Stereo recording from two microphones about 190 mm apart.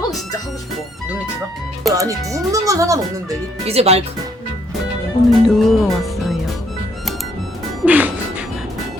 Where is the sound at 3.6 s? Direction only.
35° right (ahead or behind).